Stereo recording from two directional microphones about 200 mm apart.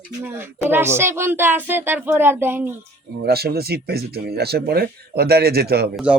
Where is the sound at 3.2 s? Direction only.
50° right (ahead or behind).